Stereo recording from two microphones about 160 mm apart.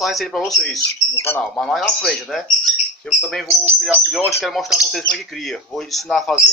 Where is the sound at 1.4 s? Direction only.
Centre (ahead or behind).